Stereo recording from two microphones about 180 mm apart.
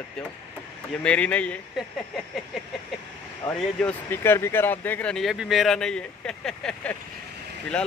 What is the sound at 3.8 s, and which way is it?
Speech, 15° left (ahead or behind).